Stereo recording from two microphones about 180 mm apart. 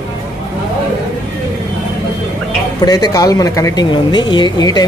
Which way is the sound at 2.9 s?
20° left (ahead or behind).